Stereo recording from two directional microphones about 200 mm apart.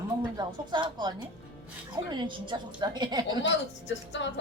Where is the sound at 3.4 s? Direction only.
65° left (ahead or behind).